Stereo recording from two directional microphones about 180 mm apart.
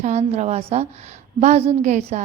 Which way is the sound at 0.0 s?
40° right (ahead or behind).